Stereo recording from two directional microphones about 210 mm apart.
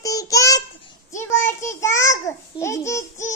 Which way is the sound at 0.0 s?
15° left (ahead or behind).